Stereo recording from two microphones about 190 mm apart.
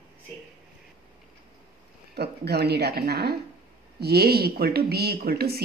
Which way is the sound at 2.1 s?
60° right (ahead or behind).